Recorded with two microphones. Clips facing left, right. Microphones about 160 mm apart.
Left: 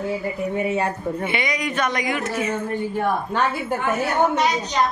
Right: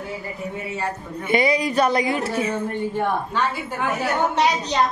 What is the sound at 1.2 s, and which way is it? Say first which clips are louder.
Speech: right 9 dB; 35° right (ahead or behind).